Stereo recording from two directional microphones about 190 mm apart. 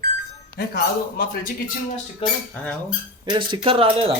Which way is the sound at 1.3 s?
45° left (ahead or behind).